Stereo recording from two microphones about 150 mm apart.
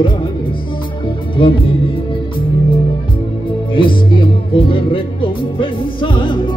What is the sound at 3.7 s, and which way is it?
Music, 35° left (ahead or behind).